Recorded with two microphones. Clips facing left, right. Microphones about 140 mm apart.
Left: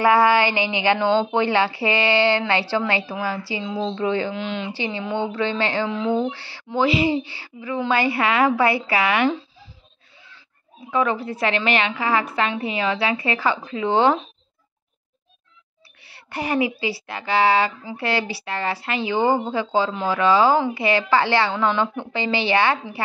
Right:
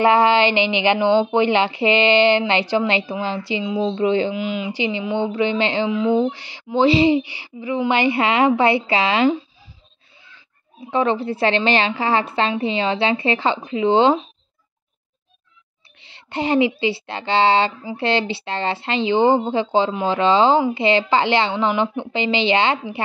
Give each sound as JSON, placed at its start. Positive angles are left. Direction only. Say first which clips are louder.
{"t": 0.0, "sound": "a woman's voice", "louder": "right 2 dB", "side_deg": -20}
{"t": 4.4, "sound": "speech", "louder": "right 4 dB", "side_deg": -10}
{"t": 5.9, "sound": "a woman's voice", "louder": "right 4 dB", "side_deg": -10}
{"t": 7.2, "sound": "a woman's voice", "louder": "right 4 dB", "side_deg": -15}
{"t": 9.3, "sound": "a sound", "louder": "right 5 dB", "side_deg": -15}
{"t": 10.9, "sound": "a woman's voice", "louder": "right 3 dB", "side_deg": -30}
{"t": 16.0, "sound": "a woman's voice", "louder": "right 4 dB", "side_deg": -20}